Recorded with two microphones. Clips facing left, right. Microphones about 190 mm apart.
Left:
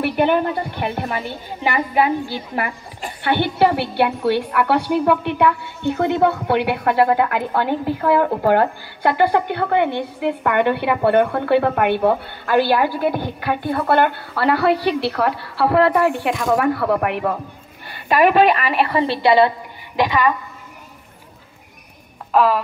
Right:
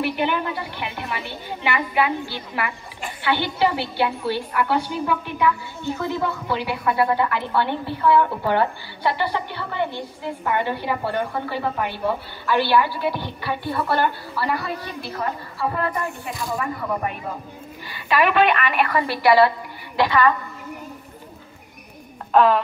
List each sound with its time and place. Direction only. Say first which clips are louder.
0.0 s a woman's voice: left 6 dB; 50° left (ahead or behind); by 17.4 s 70° left (ahead or behind)
17.8 s a woman's voice: left 5 dB; 50° left (ahead or behind); by 20.3 s 15° left (ahead or behind)
22.3 s speech: even; 5° left (ahead or behind)